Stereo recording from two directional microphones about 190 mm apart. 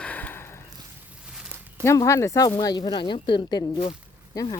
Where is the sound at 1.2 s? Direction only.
5° right (ahead or behind).